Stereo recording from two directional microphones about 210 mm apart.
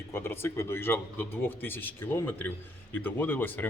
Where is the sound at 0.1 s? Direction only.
10° left (ahead or behind).